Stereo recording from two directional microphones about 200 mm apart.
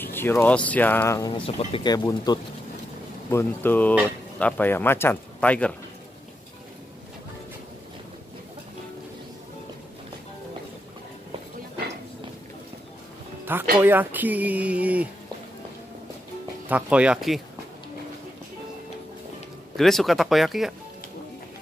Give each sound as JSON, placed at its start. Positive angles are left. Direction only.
{"t": 0.0, "sound": "speech", "side_deg": 10}
{"t": 1.4, "sound": "speech", "side_deg": 25}
{"t": 13.7, "sound": "speech", "side_deg": -10}
{"t": 16.6, "sound": "speech", "side_deg": -5}
{"t": 19.8, "sound": "speech", "side_deg": 0}